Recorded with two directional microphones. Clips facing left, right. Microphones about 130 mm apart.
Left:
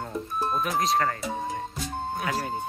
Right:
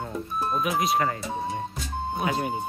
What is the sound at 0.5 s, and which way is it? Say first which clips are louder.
Speech: right 1 dB; 5° right (ahead or behind).